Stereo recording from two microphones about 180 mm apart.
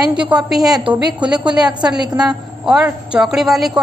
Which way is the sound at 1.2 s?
5° right (ahead or behind).